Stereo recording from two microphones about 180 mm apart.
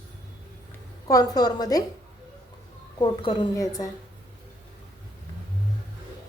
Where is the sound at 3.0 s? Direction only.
25° left (ahead or behind).